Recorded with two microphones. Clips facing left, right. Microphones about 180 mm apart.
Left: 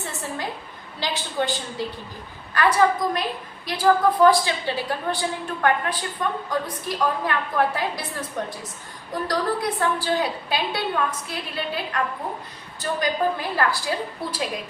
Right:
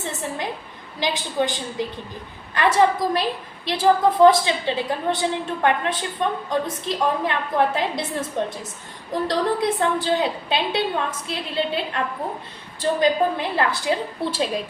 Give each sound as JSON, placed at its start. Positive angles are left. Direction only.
{"t": 0.0, "sound": "a sound", "side_deg": -20}
{"t": 0.9, "sound": "a woman's voice", "side_deg": -15}
{"t": 2.6, "sound": "a woman's voice", "side_deg": -25}